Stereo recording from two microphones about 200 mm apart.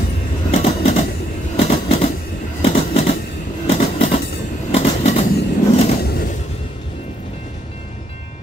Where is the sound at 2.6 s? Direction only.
30° left (ahead or behind).